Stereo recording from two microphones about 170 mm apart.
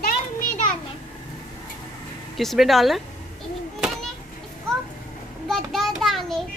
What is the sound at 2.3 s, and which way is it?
Speech, centre (ahead or behind).